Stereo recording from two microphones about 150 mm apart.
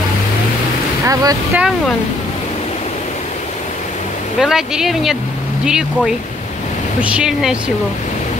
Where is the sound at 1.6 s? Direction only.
5° right (ahead or behind).